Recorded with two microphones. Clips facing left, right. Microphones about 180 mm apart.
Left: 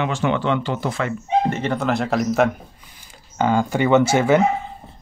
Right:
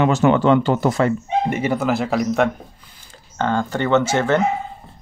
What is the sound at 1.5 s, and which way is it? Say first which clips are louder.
Speech: right 2 dB; 10° right (ahead or behind).